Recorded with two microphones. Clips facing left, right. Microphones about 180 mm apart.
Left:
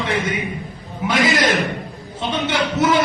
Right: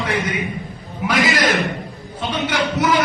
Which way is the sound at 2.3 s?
25° left (ahead or behind).